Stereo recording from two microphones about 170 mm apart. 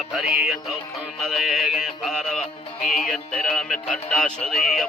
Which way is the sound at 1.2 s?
Centre (ahead or behind).